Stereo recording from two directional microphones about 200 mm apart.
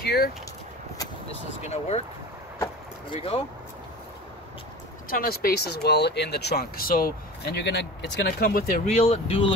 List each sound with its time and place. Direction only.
0.0 s a sound: 50° left (ahead or behind)
1.6 s speech: 35° left (ahead or behind)
3.1 s speech: 30° left (ahead or behind)
5.1 s speech: 45° left (ahead or behind)
8.8 s speech: 30° left (ahead or behind)